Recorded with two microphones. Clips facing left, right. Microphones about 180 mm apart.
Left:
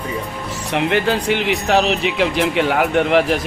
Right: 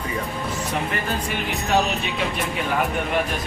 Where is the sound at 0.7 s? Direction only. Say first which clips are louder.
Left 12 dB; 75° left (ahead or behind).